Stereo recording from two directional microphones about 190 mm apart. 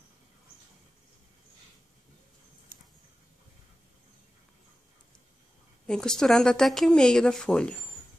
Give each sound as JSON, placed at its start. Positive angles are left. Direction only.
{"t": 5.9, "sound": "speech", "side_deg": 5}